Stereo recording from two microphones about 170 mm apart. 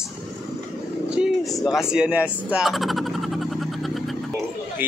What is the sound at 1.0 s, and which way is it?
Vehicle, 5° right (ahead or behind).